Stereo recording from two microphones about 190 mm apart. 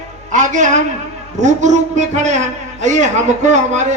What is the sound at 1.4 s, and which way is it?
A man's voice, 40° right (ahead or behind).